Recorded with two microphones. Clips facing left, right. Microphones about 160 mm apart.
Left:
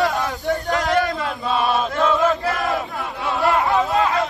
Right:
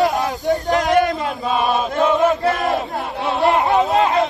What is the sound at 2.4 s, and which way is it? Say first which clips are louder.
Battle cry: right 4 dB; 25° right (ahead or behind).